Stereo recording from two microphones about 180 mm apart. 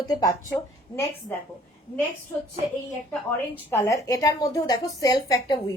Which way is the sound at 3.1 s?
10° left (ahead or behind).